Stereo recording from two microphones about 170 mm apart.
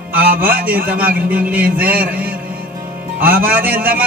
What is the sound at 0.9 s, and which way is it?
Speech, 60° right (ahead or behind).